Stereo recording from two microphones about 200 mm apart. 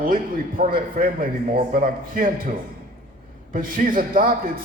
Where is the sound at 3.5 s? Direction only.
45° right (ahead or behind).